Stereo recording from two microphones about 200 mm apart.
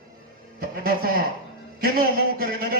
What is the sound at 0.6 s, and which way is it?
Music, 50° right (ahead or behind).